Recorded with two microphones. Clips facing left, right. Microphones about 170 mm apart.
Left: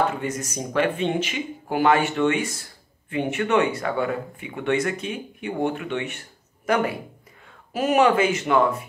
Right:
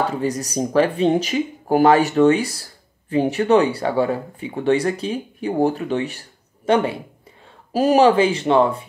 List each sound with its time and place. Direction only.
0.1 s speech: 35° right (ahead or behind)